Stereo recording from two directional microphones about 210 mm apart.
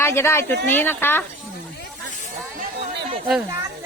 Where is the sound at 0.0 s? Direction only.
10° left (ahead or behind).